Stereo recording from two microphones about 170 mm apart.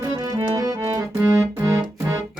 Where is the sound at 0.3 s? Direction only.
20° right (ahead or behind).